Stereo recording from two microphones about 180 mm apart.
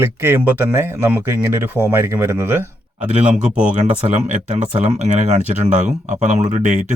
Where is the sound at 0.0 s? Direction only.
10° right (ahead or behind).